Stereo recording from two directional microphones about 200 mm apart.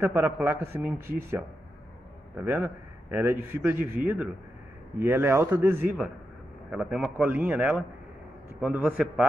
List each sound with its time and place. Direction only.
0.0 s a man's voice: 10° right (ahead or behind)